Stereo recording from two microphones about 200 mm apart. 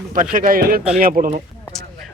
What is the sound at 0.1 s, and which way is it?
Speech, 45° right (ahead or behind).